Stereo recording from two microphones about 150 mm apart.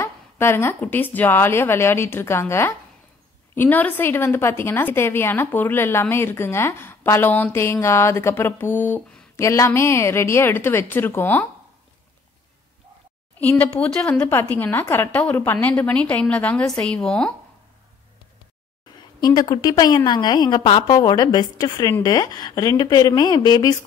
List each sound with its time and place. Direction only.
0.0 s a woman's voice: 15° left (ahead or behind)
13.4 s a woman's voice: 10° left (ahead or behind)
19.2 s speech: 25° left (ahead or behind)